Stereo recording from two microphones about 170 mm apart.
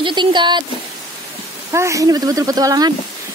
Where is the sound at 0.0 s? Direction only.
25° right (ahead or behind).